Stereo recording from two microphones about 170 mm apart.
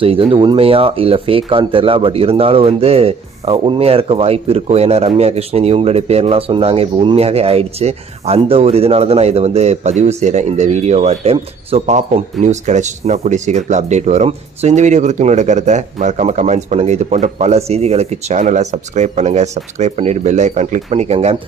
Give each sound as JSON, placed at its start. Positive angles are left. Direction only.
{"t": 0.0, "sound": "speech", "side_deg": -30}